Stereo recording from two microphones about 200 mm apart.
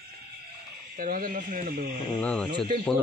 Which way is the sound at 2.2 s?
5° left (ahead or behind).